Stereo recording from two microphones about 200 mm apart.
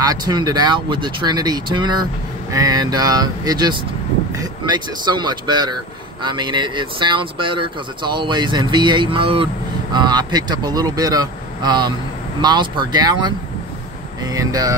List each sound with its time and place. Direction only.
0.0 s speech: 20° right (ahead or behind)